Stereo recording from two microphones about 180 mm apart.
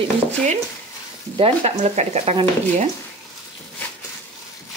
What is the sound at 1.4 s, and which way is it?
Speech, 35° right (ahead or behind).